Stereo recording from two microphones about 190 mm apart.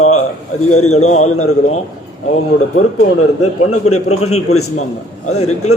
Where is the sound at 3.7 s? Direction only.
35° left (ahead or behind).